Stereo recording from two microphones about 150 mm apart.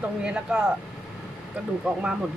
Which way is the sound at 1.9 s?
5° right (ahead or behind).